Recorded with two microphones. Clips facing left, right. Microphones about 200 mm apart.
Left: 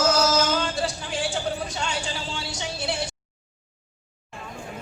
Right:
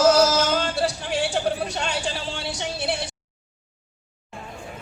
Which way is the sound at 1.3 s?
65° right (ahead or behind).